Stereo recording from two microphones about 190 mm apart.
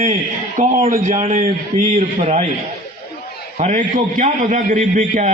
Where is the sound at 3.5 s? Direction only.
40° right (ahead or behind).